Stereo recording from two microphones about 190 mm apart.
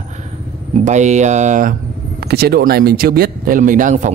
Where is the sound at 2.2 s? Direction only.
55° right (ahead or behind); by 4.1 s 40° right (ahead or behind).